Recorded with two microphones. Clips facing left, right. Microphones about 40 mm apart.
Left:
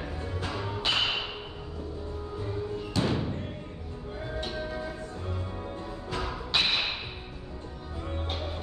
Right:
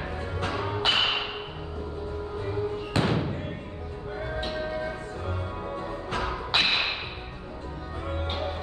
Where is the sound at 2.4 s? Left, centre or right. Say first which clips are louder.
Right 3 dB; right.